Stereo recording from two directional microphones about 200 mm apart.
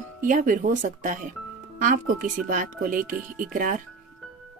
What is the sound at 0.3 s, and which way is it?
Speech, 40° right (ahead or behind).